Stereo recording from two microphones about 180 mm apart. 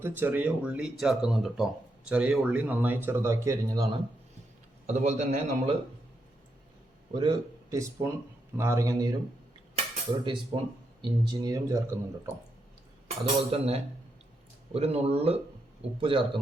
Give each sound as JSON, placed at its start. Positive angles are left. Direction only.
{"t": 0.0, "sound": "speech", "side_deg": -10}
{"t": 4.9, "sound": "a man's voice", "side_deg": -40}
{"t": 7.1, "sound": "speech", "side_deg": -25}
{"t": 10.5, "sound": "speech", "side_deg": -30}
{"t": 13.1, "sound": "a man's voice", "side_deg": -35}